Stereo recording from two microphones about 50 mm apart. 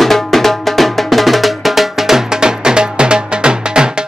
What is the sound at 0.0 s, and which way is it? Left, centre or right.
Music, centre.